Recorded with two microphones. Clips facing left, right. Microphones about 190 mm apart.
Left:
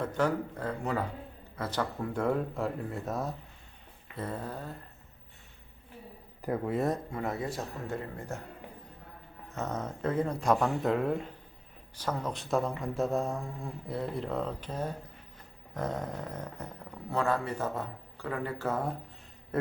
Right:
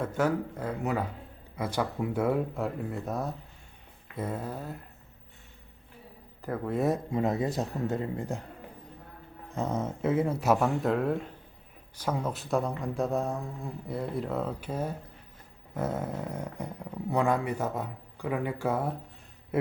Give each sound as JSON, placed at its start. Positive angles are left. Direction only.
{"t": 0.0, "sound": "speech", "side_deg": -10}
{"t": 4.1, "sound": "speech", "side_deg": -10}
{"t": 6.4, "sound": "speech", "side_deg": 15}
{"t": 6.7, "sound": "speech", "side_deg": -5}
{"t": 7.1, "sound": "speech", "side_deg": -20}
{"t": 9.5, "sound": "speech", "side_deg": -10}